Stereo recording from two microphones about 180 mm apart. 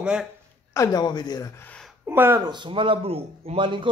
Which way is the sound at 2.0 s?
10° right (ahead or behind).